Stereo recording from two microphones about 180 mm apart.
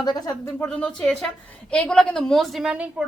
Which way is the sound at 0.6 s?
5° left (ahead or behind).